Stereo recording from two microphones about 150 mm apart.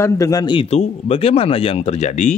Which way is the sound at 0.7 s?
40° left (ahead or behind).